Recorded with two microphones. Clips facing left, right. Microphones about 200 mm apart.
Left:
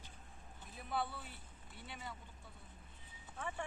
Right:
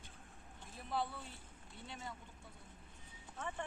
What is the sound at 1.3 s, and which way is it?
Speech, 25° right (ahead or behind).